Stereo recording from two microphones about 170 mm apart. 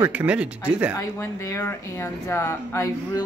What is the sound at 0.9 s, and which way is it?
Speech, 20° left (ahead or behind).